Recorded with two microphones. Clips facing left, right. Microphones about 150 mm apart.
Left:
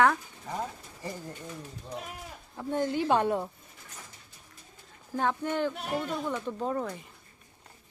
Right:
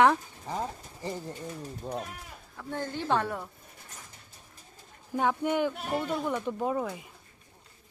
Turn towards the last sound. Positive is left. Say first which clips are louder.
# right 2 dB
turn(degrees=-5)  # may be behind; listen again after turning